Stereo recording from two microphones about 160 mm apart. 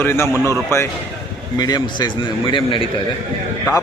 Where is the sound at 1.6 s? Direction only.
25° left (ahead or behind).